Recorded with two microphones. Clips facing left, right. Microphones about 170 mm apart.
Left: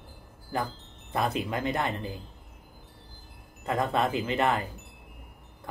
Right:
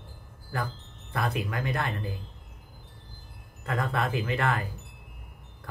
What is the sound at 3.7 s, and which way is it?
Speech, 20° left (ahead or behind).